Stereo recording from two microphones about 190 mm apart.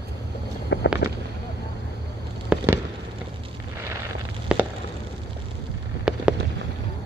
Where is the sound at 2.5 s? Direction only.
5° right (ahead or behind).